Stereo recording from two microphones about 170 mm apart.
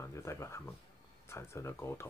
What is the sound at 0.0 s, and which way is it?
Speech, 15° left (ahead or behind).